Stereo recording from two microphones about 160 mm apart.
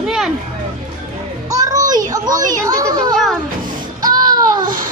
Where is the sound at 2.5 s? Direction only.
20° right (ahead or behind).